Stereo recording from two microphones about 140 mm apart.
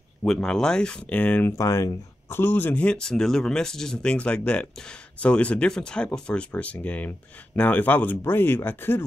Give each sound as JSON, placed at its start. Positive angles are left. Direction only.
{"t": 0.2, "sound": "speech", "side_deg": 5}